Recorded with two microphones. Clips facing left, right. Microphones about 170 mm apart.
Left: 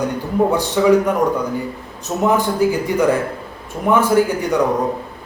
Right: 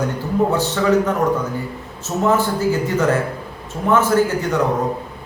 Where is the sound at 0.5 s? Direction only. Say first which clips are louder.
Left 5 dB; 15° left (ahead or behind).